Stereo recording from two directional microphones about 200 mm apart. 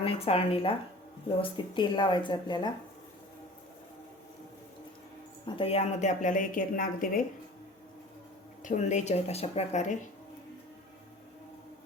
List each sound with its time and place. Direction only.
0.0 s speech: 30° left (ahead or behind)
5.5 s a woman's voice: 30° left (ahead or behind)
8.6 s a woman's voice: 35° left (ahead or behind)